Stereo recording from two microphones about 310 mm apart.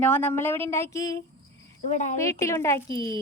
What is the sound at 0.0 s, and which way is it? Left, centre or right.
A woman's voice, centre.